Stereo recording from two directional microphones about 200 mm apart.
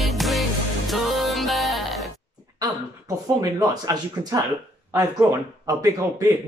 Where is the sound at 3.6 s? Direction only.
20° right (ahead or behind).